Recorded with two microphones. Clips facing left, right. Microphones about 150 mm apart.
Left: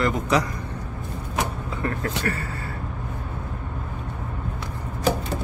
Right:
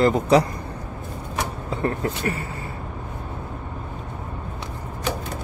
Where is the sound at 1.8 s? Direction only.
25° right (ahead or behind).